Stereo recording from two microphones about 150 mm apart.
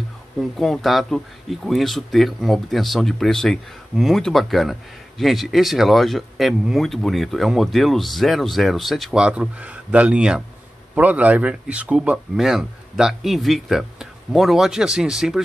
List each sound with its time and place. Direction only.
0.4 s speech: centre (ahead or behind)